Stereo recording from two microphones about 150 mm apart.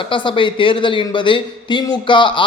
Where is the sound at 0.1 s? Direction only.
35° left (ahead or behind).